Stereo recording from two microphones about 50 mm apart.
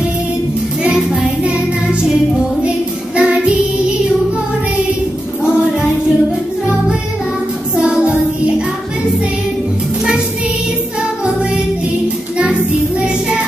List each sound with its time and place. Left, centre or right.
0.8 s music: centre
3.2 s music: centre
5.4 s music: centre